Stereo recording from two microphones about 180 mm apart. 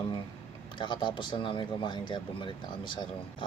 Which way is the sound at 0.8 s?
25° left (ahead or behind).